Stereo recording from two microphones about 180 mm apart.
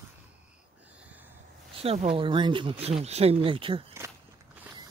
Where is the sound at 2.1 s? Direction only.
25° right (ahead or behind).